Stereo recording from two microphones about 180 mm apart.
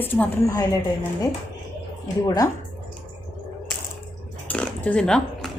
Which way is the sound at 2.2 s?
20° left (ahead or behind).